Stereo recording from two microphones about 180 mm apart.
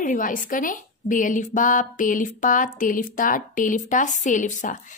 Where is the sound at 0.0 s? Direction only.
45° left (ahead or behind).